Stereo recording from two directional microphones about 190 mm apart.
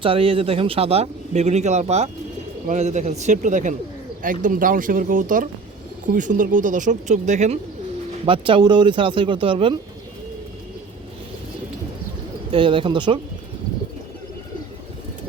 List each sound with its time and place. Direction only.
0.0 s speech: 30° right (ahead or behind)
12.5 s speech: 25° right (ahead or behind)